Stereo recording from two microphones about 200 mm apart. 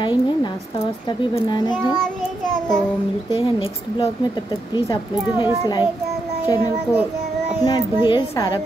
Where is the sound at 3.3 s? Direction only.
25° left (ahead or behind).